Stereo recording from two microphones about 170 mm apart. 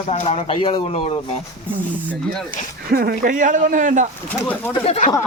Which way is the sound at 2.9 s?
60° right (ahead or behind).